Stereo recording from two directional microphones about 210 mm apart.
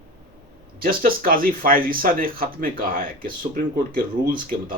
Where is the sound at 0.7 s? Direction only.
45° right (ahead or behind).